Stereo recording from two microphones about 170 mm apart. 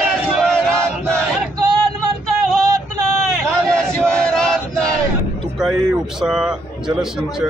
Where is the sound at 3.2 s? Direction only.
5° left (ahead or behind).